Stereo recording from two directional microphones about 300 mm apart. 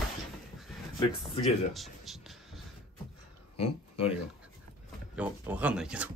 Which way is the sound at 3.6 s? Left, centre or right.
Centre.